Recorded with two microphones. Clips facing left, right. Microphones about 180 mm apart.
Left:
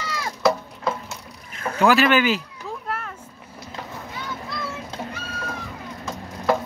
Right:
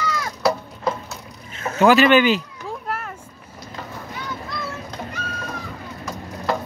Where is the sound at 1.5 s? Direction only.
25° right (ahead or behind).